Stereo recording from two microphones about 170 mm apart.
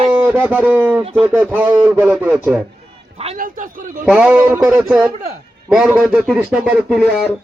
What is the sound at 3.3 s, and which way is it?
Speech, 50° right (ahead or behind).